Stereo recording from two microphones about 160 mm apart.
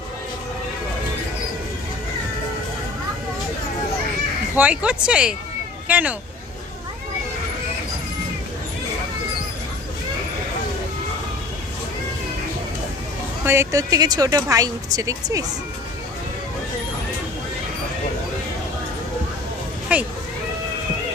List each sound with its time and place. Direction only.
4.5 s speech: 10° right (ahead or behind)
13.4 s a woman's voice: 15° right (ahead or behind)
19.9 s speech: 10° right (ahead or behind)